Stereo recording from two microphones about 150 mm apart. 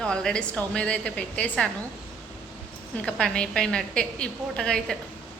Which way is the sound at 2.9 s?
5° left (ahead or behind).